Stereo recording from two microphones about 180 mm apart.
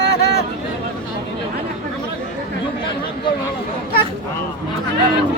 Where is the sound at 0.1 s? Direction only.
60° left (ahead or behind).